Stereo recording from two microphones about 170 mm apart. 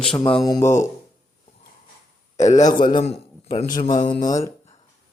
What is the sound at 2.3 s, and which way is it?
Speech, 45° left (ahead or behind).